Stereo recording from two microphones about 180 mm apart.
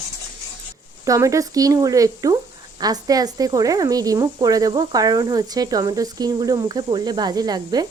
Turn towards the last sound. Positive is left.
turn(degrees=-20)  # may be behind; listen again after turning